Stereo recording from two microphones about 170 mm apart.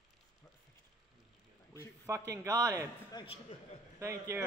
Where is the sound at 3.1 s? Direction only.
25° left (ahead or behind).